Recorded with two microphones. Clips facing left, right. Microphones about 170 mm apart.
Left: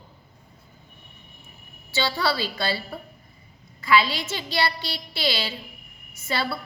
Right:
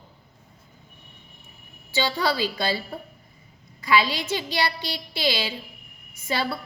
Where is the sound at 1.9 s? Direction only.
20° right (ahead or behind).